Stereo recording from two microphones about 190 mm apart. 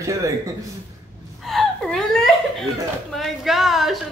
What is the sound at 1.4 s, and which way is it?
Gasp, centre (ahead or behind).